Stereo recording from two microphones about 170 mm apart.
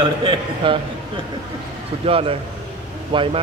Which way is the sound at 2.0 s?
35° right (ahead or behind).